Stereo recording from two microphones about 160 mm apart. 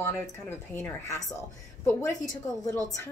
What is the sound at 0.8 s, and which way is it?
Speech, 20° left (ahead or behind).